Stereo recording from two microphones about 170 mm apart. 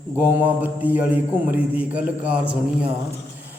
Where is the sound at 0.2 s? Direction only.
10° right (ahead or behind).